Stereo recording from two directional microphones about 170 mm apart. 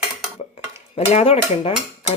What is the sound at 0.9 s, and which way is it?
Speech, 35° left (ahead or behind).